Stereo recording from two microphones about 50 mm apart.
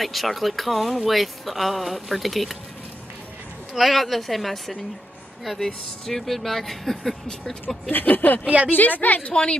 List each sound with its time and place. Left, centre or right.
0.0 s speech: centre
3.7 s speech: centre
7.9 s a woman's voice: left
9.3 s speech: centre